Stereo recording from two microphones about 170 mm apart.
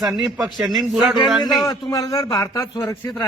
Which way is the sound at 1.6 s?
20° left (ahead or behind).